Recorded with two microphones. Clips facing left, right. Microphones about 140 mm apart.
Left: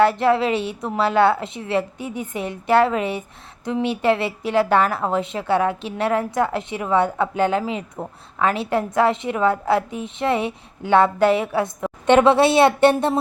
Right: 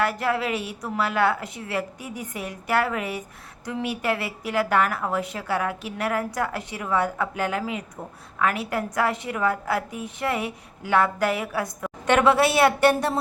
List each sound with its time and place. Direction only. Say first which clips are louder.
0.0 s a woman's voice: left 8 dB; 25° left (ahead or behind)